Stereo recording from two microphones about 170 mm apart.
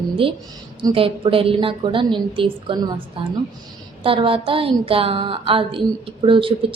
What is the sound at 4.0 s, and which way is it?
Speech, 30° right (ahead or behind).